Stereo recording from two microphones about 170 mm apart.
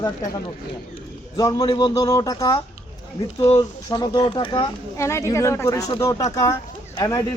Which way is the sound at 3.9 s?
25° left (ahead or behind).